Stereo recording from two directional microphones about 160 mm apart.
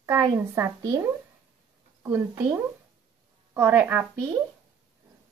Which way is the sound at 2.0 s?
20° right (ahead or behind).